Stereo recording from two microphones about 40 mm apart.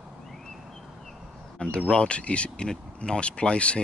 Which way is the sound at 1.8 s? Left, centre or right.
Left.